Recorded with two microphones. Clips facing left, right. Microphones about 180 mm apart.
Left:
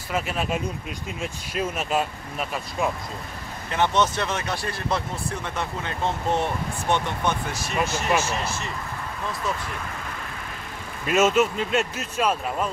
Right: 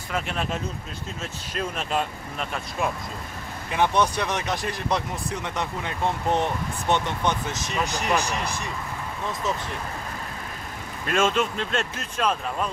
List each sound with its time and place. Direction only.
0.1 s speech: 5° left (ahead or behind)
3.7 s speech: 15° right (ahead or behind)
11.1 s speech: 5° left (ahead or behind)